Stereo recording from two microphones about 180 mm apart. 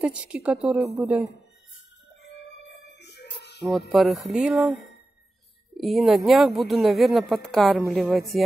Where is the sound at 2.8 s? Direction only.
70° left (ahead or behind).